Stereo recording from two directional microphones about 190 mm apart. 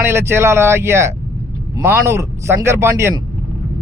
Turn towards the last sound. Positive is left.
turn(degrees=-15)  # may be behind; listen again after turning